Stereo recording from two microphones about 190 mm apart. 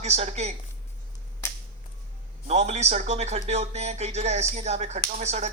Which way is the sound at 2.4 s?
35° right (ahead or behind).